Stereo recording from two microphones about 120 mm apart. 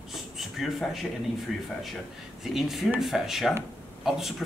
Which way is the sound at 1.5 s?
Centre (ahead or behind).